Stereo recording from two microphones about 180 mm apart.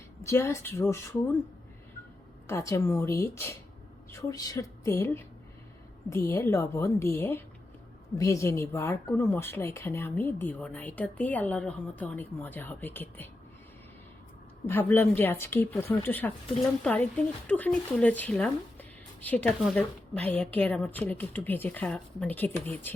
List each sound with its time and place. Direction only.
0.2 s speech: 15° left (ahead or behind)
2.5 s speech: 15° left (ahead or behind)
14.7 s speech: 10° left (ahead or behind)